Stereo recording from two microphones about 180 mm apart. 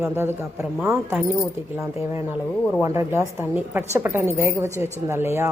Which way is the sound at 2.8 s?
15° right (ahead or behind).